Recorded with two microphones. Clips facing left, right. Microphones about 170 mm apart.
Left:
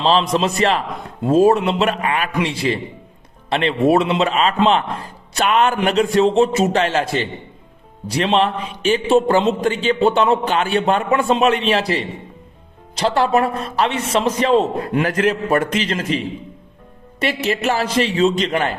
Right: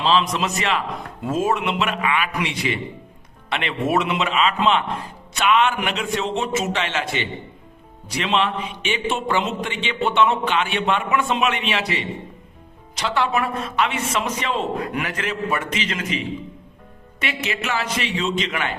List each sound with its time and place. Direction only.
0.0 s a man's voice: 35° left (ahead or behind)